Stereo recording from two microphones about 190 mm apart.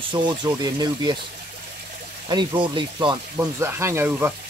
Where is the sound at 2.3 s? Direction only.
25° right (ahead or behind).